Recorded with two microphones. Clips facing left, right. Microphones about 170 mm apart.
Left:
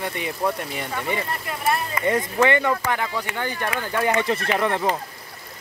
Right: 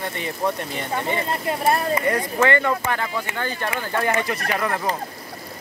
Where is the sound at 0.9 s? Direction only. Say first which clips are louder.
Right 3 dB; 25° right (ahead or behind).